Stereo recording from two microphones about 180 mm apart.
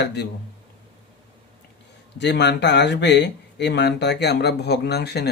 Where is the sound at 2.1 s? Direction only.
70° left (ahead or behind).